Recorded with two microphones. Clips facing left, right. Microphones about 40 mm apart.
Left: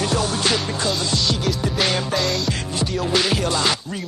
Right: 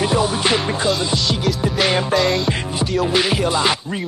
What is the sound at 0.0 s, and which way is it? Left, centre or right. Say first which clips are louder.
Music: right 3 dB; centre.